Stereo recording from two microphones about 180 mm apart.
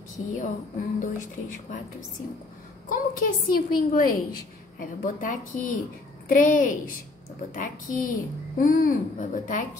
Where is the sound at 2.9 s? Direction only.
50° left (ahead or behind).